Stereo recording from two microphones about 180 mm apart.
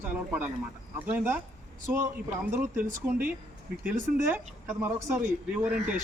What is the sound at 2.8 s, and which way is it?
Speech, 50° right (ahead or behind).